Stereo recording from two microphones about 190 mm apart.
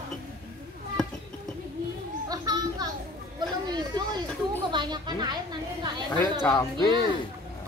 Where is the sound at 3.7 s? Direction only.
20° right (ahead or behind).